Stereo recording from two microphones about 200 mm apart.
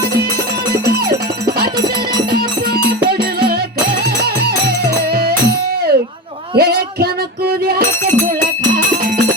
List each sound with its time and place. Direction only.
3.1 s music: 50° right (ahead or behind)
4.9 s music: 50° right (ahead or behind)
7.8 s music: 10° left (ahead or behind)